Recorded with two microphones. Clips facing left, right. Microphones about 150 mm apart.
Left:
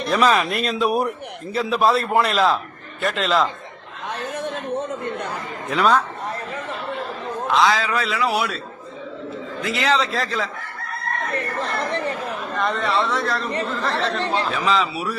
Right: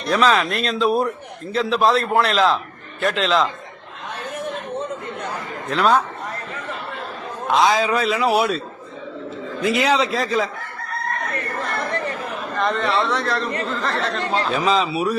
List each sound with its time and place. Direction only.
0.0 s speech: 5° left (ahead or behind)
5.7 s speech: centre (ahead or behind)
7.5 s a man's voice: 20° right (ahead or behind)
9.6 s a man's voice: 15° right (ahead or behind)
11.3 s speech: 30° left (ahead or behind)
12.5 s speech: centre (ahead or behind)
14.6 s a man's voice: 20° right (ahead or behind)